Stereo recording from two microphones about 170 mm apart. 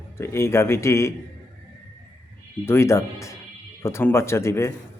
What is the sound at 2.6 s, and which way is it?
A man's voice, 15° left (ahead or behind).